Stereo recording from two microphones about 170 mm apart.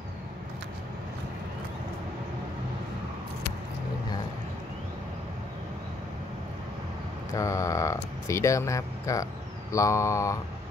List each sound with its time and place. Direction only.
7.3 s speech: 20° left (ahead or behind)